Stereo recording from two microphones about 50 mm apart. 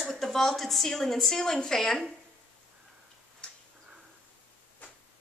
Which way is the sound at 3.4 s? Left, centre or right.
Centre.